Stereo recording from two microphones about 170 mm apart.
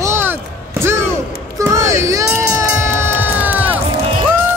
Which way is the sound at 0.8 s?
15° right (ahead or behind).